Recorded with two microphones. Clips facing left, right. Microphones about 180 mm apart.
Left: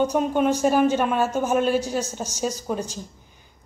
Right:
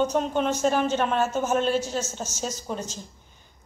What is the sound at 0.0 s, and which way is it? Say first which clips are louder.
Speech: left 3 dB; 10° left (ahead or behind).